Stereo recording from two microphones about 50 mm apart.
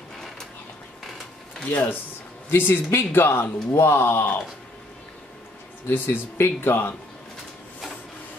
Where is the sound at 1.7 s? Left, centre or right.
Left.